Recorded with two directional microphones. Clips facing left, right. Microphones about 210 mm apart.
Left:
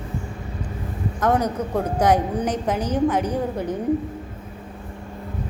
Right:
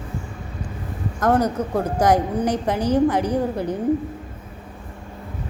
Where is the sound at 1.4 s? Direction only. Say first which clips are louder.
Right 2 dB; 10° right (ahead or behind).